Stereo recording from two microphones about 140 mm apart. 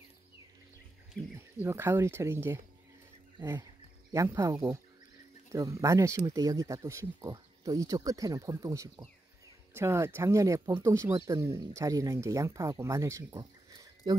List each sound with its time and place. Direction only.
1.3 s speech: 15° right (ahead or behind)
4.1 s speech: 20° right (ahead or behind)